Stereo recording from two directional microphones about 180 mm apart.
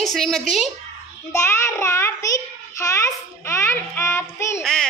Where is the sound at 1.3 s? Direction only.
15° left (ahead or behind).